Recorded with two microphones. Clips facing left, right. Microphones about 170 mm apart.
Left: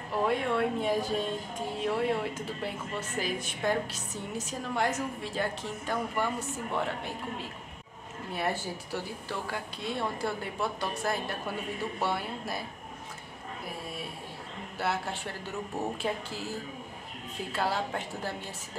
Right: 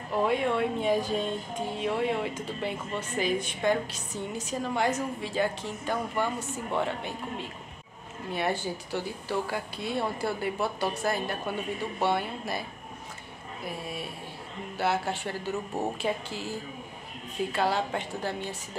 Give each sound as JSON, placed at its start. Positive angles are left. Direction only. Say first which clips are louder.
{"t": 0.2, "sound": "a woman's voice", "louder": "right 2 dB", "side_deg": 0}
{"t": 8.3, "sound": "a woman's voice", "louder": "right 3 dB", "side_deg": 0}
{"t": 14.8, "sound": "a woman's voice", "louder": "right 4 dB", "side_deg": 0}